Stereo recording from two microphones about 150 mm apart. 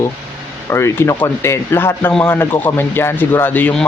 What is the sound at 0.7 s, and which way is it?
Speech, 15° left (ahead or behind).